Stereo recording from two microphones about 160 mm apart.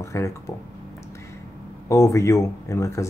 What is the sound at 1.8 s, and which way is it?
Speech, 20° left (ahead or behind).